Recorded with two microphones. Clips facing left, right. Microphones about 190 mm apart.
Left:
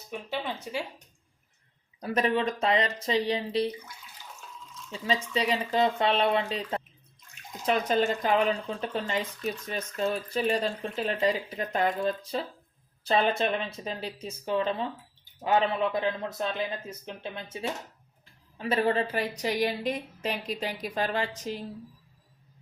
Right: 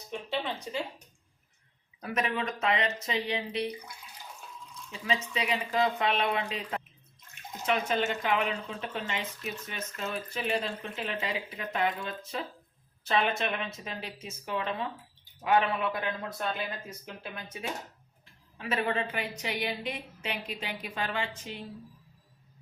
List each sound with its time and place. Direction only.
0.1 s speech: 10° left (ahead or behind)
2.0 s speech: 35° left (ahead or behind)
4.9 s speech: 35° left (ahead or behind)